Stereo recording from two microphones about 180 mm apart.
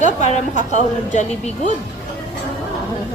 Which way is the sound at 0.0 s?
40° left (ahead or behind).